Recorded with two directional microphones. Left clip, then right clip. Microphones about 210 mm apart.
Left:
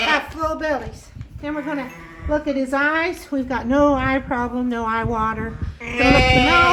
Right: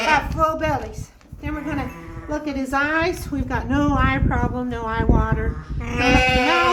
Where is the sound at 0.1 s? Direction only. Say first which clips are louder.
Right 2 dB; 35° left (ahead or behind).